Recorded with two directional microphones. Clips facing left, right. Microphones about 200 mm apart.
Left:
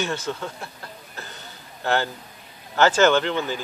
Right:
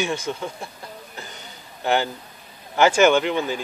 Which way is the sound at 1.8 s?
15° right (ahead or behind).